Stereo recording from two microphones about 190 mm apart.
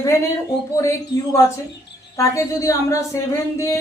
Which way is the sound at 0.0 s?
15° left (ahead or behind).